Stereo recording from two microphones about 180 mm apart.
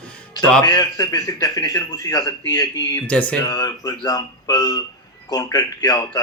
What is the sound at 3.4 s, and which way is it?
Speech, 20° left (ahead or behind).